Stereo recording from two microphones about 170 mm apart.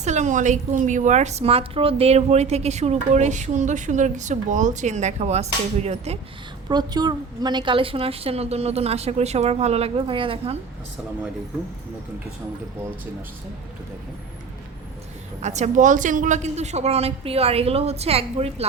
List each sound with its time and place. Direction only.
0.0 s a woman's voice: 45° right (ahead or behind)
6.7 s a woman's voice: 25° right (ahead or behind)
15.4 s a woman's voice: 40° right (ahead or behind)